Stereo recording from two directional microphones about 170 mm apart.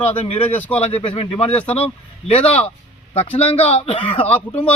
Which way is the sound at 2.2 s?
35° left (ahead or behind).